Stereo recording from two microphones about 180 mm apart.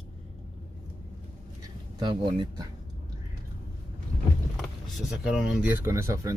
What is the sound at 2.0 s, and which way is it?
Speech, 25° right (ahead or behind).